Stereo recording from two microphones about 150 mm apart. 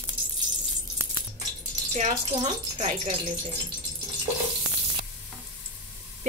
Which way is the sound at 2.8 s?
45° right (ahead or behind).